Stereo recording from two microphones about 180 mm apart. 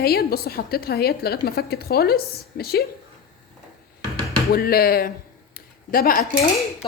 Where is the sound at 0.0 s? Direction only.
60° left (ahead or behind).